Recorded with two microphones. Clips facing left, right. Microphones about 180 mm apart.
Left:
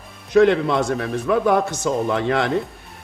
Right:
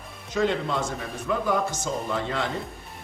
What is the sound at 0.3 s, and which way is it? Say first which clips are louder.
A man's voice: left 10 dB; 70° left (ahead or behind).